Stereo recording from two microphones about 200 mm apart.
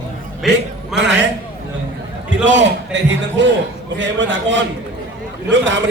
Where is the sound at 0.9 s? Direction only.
65° right (ahead or behind).